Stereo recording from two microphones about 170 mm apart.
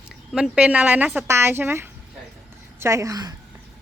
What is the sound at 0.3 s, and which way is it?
A woman's voice, 5° right (ahead or behind).